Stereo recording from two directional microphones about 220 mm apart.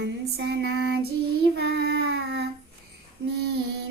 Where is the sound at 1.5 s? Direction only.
50° right (ahead or behind).